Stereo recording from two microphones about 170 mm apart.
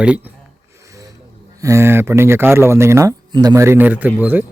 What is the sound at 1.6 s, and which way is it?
A man's voice, 15° right (ahead or behind).